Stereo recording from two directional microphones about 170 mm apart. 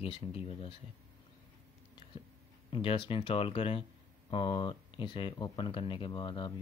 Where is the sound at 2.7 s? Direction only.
30° left (ahead or behind).